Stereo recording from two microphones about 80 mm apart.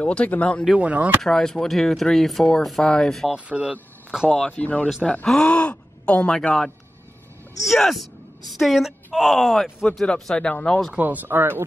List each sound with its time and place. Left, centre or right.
0.0 s speech: centre
0.7 s speech: centre
1.2 s speech: centre
3.3 s speech: centre
4.5 s speech: centre
11.0 s speech: right